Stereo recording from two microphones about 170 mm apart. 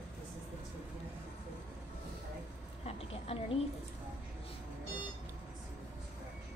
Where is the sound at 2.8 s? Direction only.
35° left (ahead or behind).